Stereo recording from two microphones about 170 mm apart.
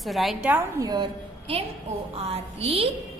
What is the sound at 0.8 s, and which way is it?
A woman's voice, 25° right (ahead or behind).